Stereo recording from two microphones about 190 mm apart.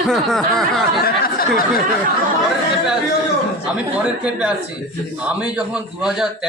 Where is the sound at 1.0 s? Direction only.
50° left (ahead or behind).